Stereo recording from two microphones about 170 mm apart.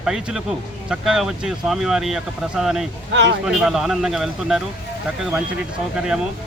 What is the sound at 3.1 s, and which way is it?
Speech, 90° right.